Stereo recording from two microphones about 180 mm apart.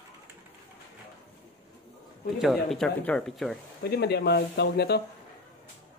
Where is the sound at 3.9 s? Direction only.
65° left (ahead or behind).